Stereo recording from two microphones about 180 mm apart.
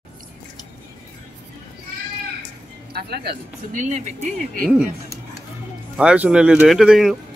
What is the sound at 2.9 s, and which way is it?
Speech, 60° right (ahead or behind).